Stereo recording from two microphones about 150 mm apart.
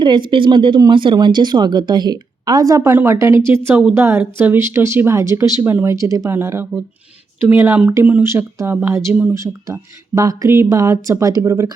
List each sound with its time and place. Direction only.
0.0 s speech: 30° right (ahead or behind); by 9.3 s 10° right (ahead or behind)
9.3 s speech: 20° right (ahead or behind)